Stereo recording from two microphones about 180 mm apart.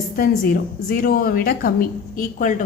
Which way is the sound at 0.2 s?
55° left (ahead or behind).